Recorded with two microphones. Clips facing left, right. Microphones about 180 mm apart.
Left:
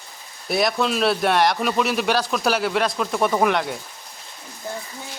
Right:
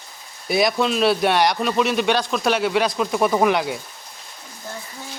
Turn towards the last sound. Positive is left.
turn(degrees=-5)  # may be behind; listen again after turning